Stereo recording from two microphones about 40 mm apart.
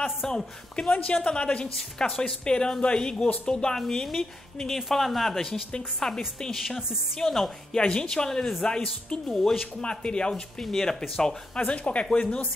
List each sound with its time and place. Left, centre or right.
0.3 s speech: centre
0.9 s speech: left
3.8 s speech: centre
5.5 s speech: centre
7.7 s speech: left; by 9.7 s centre
9.8 s speech: left
10.6 s speech: centre; by 12.4 s left